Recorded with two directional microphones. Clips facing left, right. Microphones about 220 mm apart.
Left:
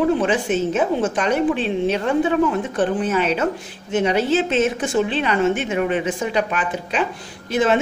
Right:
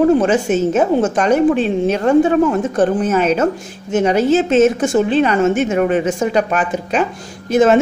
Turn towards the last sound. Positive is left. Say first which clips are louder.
# right 6 dB
turn(degrees=-45)  # may be behind; listen again after turning